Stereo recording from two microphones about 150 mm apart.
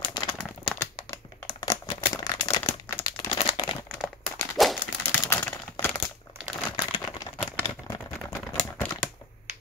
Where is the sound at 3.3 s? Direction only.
35° left (ahead or behind).